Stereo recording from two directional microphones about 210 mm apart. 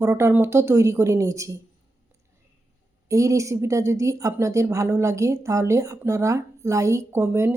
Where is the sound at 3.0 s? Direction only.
15° right (ahead or behind).